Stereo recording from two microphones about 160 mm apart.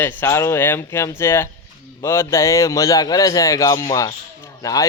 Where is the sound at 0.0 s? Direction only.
15° left (ahead or behind).